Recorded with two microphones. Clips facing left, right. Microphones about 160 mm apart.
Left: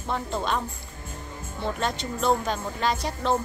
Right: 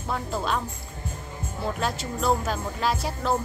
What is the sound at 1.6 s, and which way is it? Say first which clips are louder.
Speech: even; 5° right (ahead or behind).